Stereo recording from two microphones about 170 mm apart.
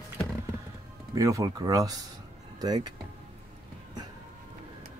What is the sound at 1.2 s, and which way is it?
Speech, 20° right (ahead or behind).